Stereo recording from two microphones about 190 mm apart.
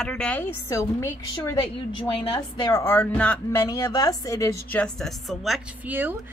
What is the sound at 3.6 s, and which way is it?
A woman's voice, 20° left (ahead or behind).